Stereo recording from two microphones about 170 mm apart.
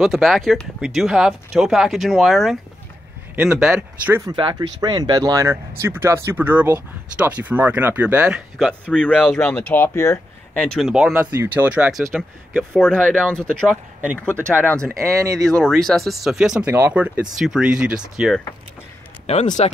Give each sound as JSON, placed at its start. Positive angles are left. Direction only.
{"t": 0.0, "sound": "speech", "side_deg": 0}
{"t": 4.3, "sound": "speech", "side_deg": -25}
{"t": 9.4, "sound": "speech", "side_deg": 10}
{"t": 14.4, "sound": "speech", "side_deg": -10}
{"t": 14.7, "sound": "speech", "side_deg": 10}
{"t": 15.0, "sound": "speech", "side_deg": -15}
{"t": 15.4, "sound": "speech", "side_deg": 5}
{"t": 19.2, "sound": "speech", "side_deg": 45}